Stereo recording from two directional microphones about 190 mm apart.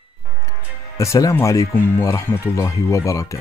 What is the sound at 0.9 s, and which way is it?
Speech, 15° left (ahead or behind).